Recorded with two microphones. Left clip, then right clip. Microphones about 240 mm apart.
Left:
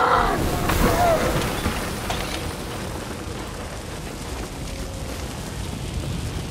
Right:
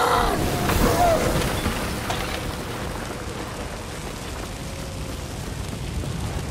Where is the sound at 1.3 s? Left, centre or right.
Centre.